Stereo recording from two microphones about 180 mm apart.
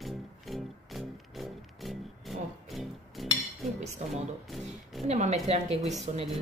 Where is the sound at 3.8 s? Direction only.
40° right (ahead or behind).